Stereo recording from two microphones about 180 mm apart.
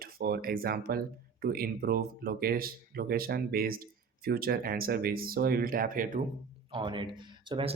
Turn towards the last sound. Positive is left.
turn(degrees=-25)  # may be behind; listen again after turning